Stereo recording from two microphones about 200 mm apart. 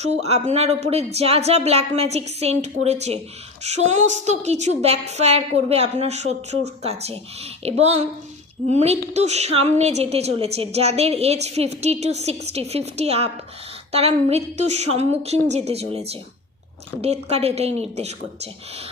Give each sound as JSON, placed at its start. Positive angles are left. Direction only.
{"t": 0.0, "sound": "a woman's voice", "side_deg": -35}